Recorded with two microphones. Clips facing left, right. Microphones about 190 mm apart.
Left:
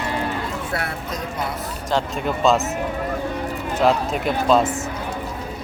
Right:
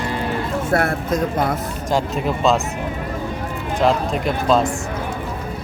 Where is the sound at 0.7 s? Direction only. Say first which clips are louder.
Right 8 dB; 50° right (ahead or behind).